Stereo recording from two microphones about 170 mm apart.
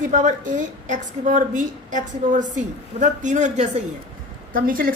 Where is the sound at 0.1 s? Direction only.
50° right (ahead or behind).